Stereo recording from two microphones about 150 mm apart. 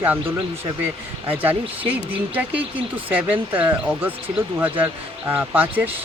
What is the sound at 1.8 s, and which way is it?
Speech, 35° right (ahead or behind).